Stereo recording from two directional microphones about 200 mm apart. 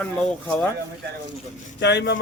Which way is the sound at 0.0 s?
5° left (ahead or behind).